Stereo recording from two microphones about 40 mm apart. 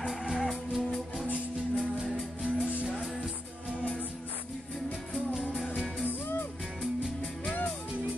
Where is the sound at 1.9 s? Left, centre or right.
Centre.